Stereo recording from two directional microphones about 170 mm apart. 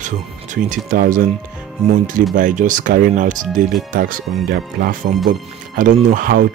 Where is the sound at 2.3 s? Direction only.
50° right (ahead or behind).